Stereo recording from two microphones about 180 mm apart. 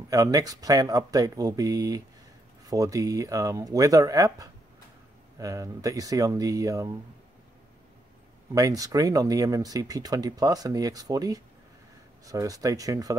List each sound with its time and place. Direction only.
0.1 s speech: 20° right (ahead or behind)
8.5 s speech: 20° right (ahead or behind)